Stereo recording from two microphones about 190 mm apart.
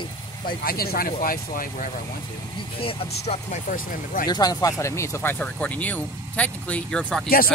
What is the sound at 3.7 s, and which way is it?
Speech, 45° left (ahead or behind).